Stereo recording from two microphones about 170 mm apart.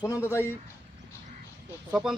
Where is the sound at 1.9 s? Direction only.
5° right (ahead or behind).